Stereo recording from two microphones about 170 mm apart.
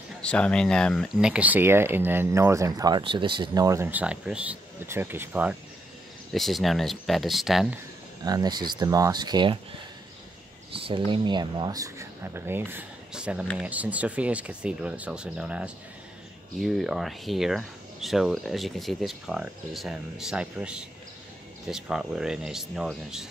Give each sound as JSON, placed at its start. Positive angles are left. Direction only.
{"t": 0.2, "sound": "speech", "side_deg": 5}
{"t": 8.2, "sound": "speech", "side_deg": -25}
{"t": 10.7, "sound": "a sound", "side_deg": -35}
{"t": 11.1, "sound": "speech", "side_deg": -25}